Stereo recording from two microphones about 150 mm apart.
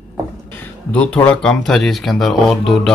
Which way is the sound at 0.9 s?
10° left (ahead or behind).